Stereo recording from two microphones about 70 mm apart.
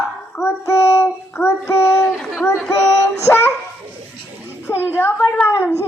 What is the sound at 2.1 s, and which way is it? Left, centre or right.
Chatter, centre.